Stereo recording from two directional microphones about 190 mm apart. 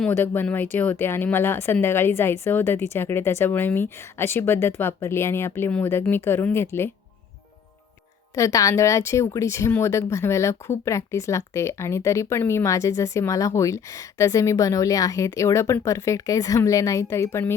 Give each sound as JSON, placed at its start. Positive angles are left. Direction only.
{"t": 0.0, "sound": "speech", "side_deg": 10}
{"t": 8.4, "sound": "speech", "side_deg": 15}